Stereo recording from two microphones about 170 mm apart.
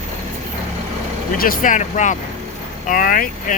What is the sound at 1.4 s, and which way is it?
Speech, 55° left (ahead or behind).